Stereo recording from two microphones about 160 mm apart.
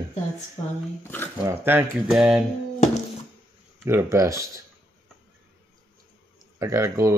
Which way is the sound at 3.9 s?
15° right (ahead or behind).